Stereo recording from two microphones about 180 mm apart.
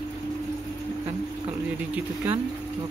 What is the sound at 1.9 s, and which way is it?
Speech, 10° right (ahead or behind).